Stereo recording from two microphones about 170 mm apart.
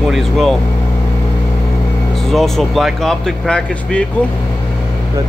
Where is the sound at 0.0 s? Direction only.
Centre (ahead or behind).